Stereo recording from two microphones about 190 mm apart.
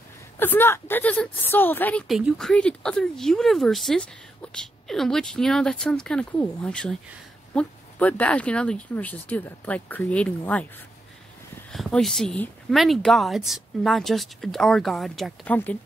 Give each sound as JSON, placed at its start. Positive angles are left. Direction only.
{"t": 0.4, "sound": "a woman's voice", "side_deg": 10}
{"t": 11.7, "sound": "a woman's voice", "side_deg": 0}